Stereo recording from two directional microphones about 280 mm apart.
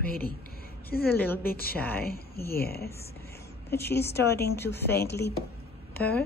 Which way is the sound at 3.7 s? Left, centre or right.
Centre.